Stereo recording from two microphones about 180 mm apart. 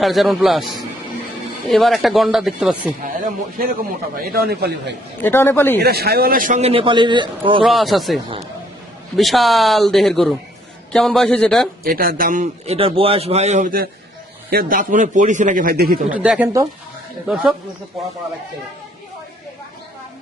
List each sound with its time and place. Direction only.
0.0 s speech: centre (ahead or behind)
3.0 s speech: 50° right (ahead or behind)
5.2 s a man's voice: 10° left (ahead or behind)
5.8 s a man's voice: 60° right (ahead or behind); by 7.6 s 25° right (ahead or behind)
7.6 s speech: centre (ahead or behind)
11.9 s speech: 50° right (ahead or behind)
12.6 s a man's voice: 30° right (ahead or behind); by 16.0 s 55° right (ahead or behind)
16.0 s speech: 5° right (ahead or behind)